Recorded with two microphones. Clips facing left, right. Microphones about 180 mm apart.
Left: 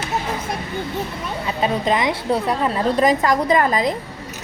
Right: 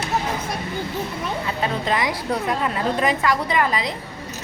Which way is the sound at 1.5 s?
20° left (ahead or behind).